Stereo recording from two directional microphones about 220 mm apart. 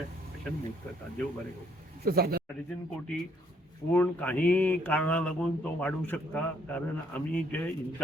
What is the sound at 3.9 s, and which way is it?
A man's voice, 5° left (ahead or behind).